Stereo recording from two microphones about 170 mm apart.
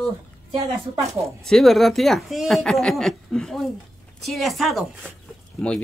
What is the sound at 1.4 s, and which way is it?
Speech, centre (ahead or behind).